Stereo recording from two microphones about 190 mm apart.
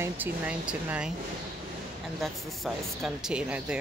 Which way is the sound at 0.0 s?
10° right (ahead or behind).